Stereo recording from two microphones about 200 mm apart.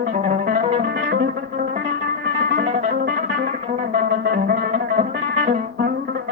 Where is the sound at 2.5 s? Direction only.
40° right (ahead or behind).